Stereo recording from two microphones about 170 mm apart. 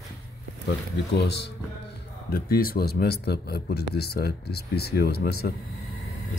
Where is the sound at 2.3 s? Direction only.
60° left (ahead or behind).